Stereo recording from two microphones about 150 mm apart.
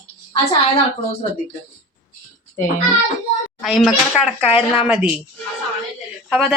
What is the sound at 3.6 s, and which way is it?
Speech, centre (ahead or behind).